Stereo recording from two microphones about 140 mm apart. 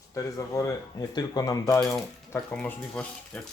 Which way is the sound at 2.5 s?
10° left (ahead or behind).